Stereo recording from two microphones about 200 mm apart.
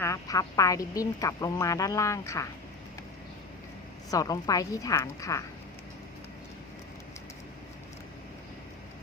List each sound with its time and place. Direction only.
0.0 s speech: 15° left (ahead or behind)
4.1 s speech: 20° left (ahead or behind)